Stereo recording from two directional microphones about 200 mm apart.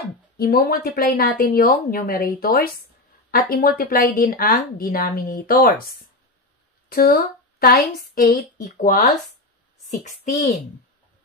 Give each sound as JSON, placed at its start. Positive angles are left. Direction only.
{"t": 0.4, "sound": "a woman's voice", "side_deg": 50}
{"t": 6.9, "sound": "a woman's voice", "side_deg": 50}